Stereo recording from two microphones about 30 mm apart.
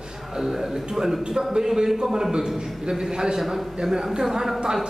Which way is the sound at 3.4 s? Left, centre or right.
Centre.